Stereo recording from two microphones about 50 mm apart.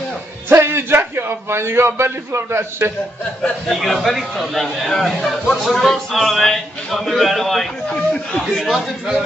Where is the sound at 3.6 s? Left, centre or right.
Centre.